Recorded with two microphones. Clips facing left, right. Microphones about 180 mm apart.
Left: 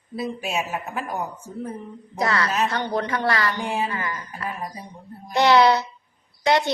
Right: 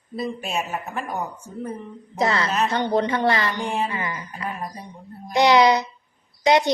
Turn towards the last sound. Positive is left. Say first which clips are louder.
# right 2 dB
turn(degrees=-20)  # may be behind; listen again after turning